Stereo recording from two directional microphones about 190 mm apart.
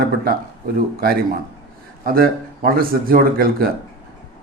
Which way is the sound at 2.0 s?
50° right (ahead or behind).